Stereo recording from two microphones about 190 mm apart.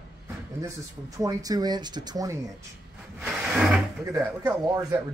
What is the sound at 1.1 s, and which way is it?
Speech, 20° right (ahead or behind).